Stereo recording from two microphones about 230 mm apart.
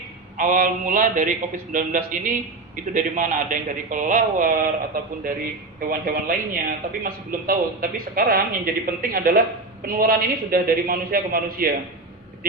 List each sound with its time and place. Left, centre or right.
0.3 s speech: right
5.9 s speech: right